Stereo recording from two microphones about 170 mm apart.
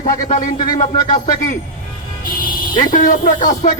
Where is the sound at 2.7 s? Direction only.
50° left (ahead or behind).